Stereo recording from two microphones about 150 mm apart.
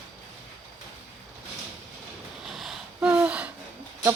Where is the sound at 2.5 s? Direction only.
Centre (ahead or behind).